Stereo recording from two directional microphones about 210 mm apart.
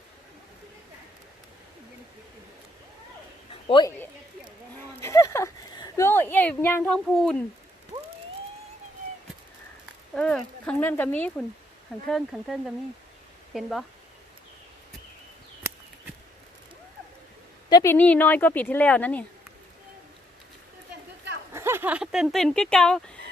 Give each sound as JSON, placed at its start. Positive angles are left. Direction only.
{"t": 3.7, "sound": "speech", "side_deg": 20}
{"t": 4.9, "sound": "speech", "side_deg": 15}
{"t": 10.2, "sound": "a woman's voice", "side_deg": 5}
{"t": 17.7, "sound": "a woman's voice", "side_deg": 15}
{"t": 21.5, "sound": "dog", "side_deg": -10}